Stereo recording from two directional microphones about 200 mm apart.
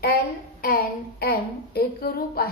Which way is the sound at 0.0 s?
50° left (ahead or behind).